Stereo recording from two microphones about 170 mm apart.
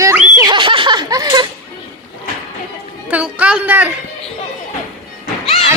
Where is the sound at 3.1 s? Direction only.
10° right (ahead or behind).